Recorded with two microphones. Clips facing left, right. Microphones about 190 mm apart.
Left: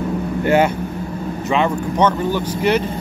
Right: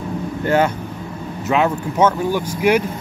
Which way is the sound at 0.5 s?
10° left (ahead or behind).